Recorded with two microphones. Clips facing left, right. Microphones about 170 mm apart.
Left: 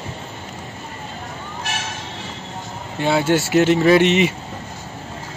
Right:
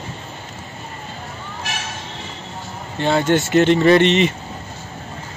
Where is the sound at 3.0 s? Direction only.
5° left (ahead or behind).